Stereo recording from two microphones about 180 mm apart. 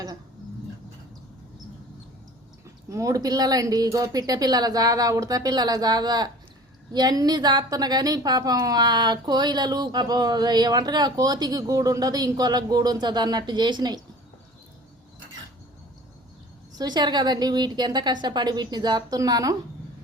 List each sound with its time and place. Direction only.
2.9 s a woman's voice: 20° right (ahead or behind)
16.7 s a woman's voice: 25° right (ahead or behind)